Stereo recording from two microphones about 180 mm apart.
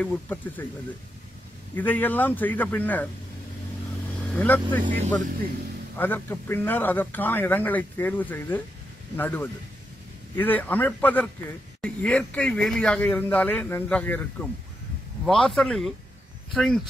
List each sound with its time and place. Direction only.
0.0 s speech: 10° left (ahead or behind)
1.8 s speech: 10° left (ahead or behind)
4.4 s speech: 10° left (ahead or behind)
4.8 s speech: 40° right (ahead or behind)
5.9 s speech: 10° left (ahead or behind)